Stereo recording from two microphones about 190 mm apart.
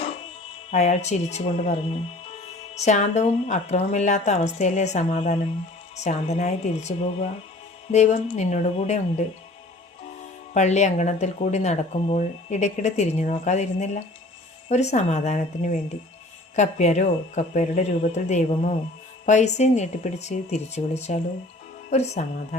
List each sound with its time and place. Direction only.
0.7 s speech: 35° left (ahead or behind)
2.7 s speech: 40° left (ahead or behind)
10.5 s speech: 35° left (ahead or behind)